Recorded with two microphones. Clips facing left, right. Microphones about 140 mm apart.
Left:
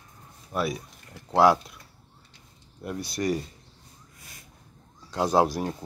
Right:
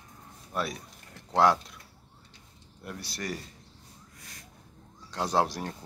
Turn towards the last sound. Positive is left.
turn(degrees=10)  # may be behind; listen again after turning